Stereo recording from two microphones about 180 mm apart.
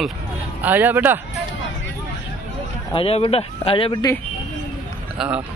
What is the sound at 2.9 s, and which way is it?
Speech, 30° left (ahead or behind).